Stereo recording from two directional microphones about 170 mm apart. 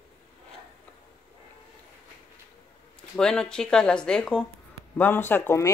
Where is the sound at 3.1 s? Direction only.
5° left (ahead or behind).